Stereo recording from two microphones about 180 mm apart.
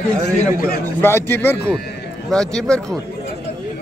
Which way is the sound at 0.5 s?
55° left (ahead or behind).